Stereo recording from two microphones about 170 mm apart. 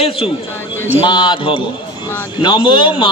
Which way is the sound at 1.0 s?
25° left (ahead or behind).